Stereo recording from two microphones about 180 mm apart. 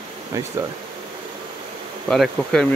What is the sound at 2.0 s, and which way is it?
Bee, centre (ahead or behind).